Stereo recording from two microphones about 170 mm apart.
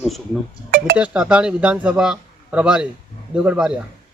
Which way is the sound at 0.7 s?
60° right (ahead or behind).